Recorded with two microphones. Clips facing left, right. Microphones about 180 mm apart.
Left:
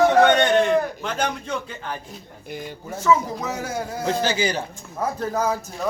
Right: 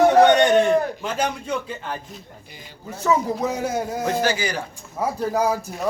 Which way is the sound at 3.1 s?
35° right (ahead or behind).